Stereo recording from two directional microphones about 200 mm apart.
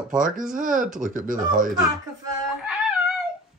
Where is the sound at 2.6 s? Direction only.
5° right (ahead or behind).